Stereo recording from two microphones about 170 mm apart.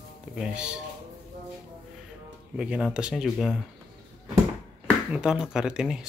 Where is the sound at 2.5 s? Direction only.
5° right (ahead or behind).